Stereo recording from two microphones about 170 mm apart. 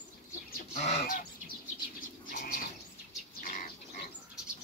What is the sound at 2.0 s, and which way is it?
Bird, 50° left (ahead or behind).